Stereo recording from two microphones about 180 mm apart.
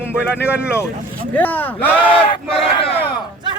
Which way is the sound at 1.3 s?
10° left (ahead or behind).